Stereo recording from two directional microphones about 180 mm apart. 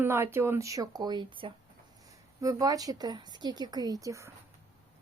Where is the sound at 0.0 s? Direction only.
15° right (ahead or behind).